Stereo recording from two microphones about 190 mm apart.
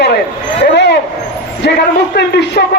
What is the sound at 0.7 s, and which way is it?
Vehicle, 65° left (ahead or behind).